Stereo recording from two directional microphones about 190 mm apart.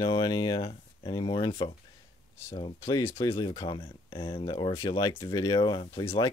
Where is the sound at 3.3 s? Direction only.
25° left (ahead or behind).